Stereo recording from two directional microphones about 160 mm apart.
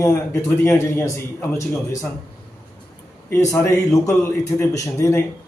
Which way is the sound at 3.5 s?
15° left (ahead or behind).